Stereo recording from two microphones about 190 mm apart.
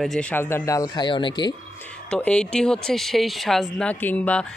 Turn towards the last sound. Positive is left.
turn(degrees=5)  # may be behind; listen again after turning